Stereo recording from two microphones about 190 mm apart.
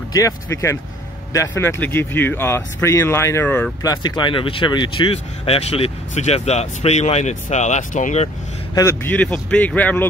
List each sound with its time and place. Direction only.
0.1 s speech: 15° left (ahead or behind)
3.8 s speech: 20° left (ahead or behind); by 8.3 s 40° left (ahead or behind)
8.7 s speech: 15° left (ahead or behind)